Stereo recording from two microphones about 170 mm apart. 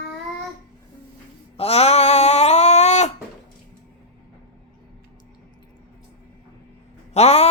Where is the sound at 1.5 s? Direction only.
35° left (ahead or behind).